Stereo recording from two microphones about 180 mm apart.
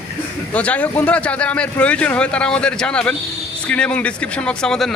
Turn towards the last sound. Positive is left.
turn(degrees=5)  # may be behind; listen again after turning